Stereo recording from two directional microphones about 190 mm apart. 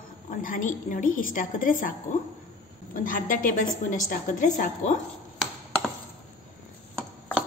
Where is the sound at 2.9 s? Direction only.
45° left (ahead or behind).